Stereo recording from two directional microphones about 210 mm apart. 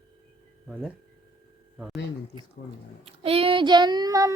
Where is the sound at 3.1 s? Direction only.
25° right (ahead or behind).